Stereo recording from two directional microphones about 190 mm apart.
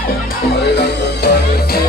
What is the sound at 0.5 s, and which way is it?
Music, 60° left (ahead or behind).